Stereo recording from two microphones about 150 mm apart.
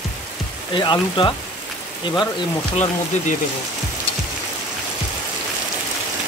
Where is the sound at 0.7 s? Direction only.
35° left (ahead or behind).